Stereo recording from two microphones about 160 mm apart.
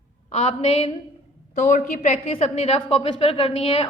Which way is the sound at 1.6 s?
55° left (ahead or behind).